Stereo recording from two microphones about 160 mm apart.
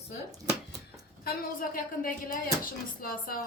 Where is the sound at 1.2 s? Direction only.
60° left (ahead or behind).